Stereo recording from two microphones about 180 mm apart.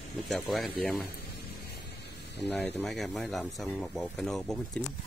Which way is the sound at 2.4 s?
5° left (ahead or behind).